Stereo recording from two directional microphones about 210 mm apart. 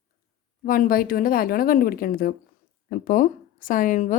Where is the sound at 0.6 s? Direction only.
45° left (ahead or behind).